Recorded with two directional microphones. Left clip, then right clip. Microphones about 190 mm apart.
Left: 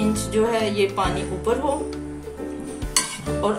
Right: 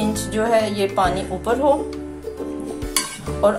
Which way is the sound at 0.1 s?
40° right (ahead or behind).